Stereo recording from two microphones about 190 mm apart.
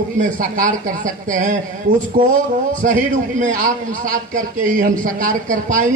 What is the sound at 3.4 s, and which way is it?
Speech, 40° right (ahead or behind).